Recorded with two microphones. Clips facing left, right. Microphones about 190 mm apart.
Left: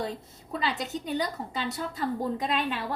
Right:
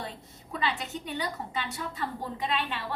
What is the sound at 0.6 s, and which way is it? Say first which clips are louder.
A woman's voice: left 1 dB; 40° left (ahead or behind).